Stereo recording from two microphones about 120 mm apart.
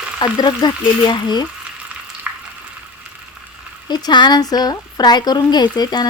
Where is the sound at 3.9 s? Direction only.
35° left (ahead or behind).